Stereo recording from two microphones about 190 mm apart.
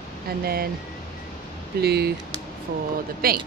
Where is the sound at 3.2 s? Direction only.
50° right (ahead or behind).